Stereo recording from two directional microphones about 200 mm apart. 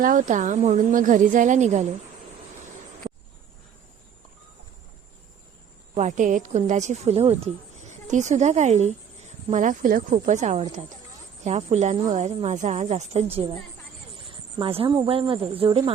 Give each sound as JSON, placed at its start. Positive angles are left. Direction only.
{"t": 0.0, "sound": "a woman's voice", "side_deg": -40}
{"t": 5.9, "sound": "a woman's voice", "side_deg": -35}